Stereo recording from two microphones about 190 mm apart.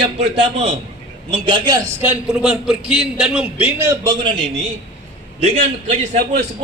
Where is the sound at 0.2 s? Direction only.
30° right (ahead or behind).